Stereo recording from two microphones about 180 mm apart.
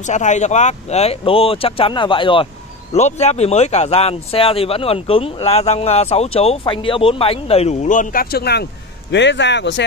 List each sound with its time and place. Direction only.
0.0 s speech: 40° left (ahead or behind)
2.9 s speech: 40° left (ahead or behind); by 8.6 s 65° left (ahead or behind)
9.1 s speech: 80° left